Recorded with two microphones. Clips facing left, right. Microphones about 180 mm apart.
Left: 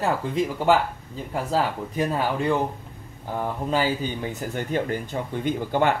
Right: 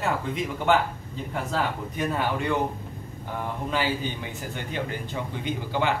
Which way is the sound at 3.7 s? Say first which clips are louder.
Left 3 dB; 40° left (ahead or behind).